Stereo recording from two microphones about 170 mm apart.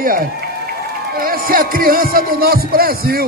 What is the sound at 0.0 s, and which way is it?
A man's voice, 55° right (ahead or behind).